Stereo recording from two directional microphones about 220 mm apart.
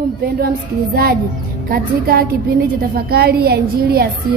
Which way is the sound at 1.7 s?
45° right (ahead or behind).